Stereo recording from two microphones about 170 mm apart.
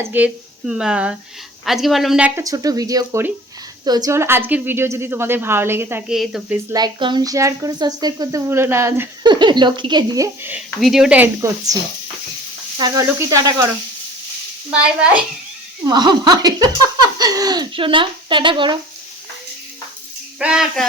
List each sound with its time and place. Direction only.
0.0 s a woman's voice: 10° right (ahead or behind)
2.4 s a woman's voice: 20° right (ahead or behind); by 6.6 s 5° right (ahead or behind)
6.7 s speech: 25° right (ahead or behind)
9.2 s speech: 25° right (ahead or behind)
10.8 s speech: centre (ahead or behind)
11.3 s speech: 20° right (ahead or behind)
12.8 s speech: 20° right (ahead or behind)
14.7 s a woman's voice: 5° right (ahead or behind)
15.9 s speech: 25° right (ahead or behind)
20.4 s speech: 5° right (ahead or behind)